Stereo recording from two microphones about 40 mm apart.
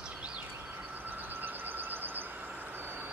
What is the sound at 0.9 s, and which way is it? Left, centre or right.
Vehicle, right.